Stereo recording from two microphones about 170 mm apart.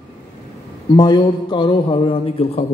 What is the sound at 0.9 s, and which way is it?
A man's voice, 25° left (ahead or behind).